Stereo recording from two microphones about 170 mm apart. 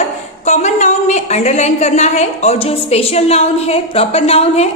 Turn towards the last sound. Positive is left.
turn(degrees=40)  # may be behind; listen again after turning